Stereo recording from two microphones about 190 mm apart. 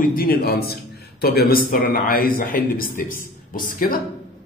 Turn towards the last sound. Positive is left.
turn(degrees=50)  # may be behind; listen again after turning